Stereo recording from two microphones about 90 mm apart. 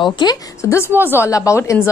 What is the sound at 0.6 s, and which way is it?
Speech, 30° left (ahead or behind).